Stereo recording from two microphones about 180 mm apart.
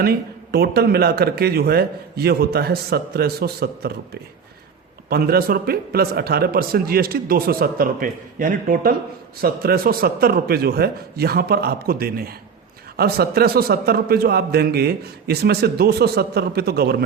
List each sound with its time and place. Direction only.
0.0 s speech: 60° right (ahead or behind)